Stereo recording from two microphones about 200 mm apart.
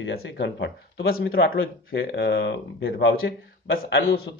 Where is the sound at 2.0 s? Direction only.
55° left (ahead or behind).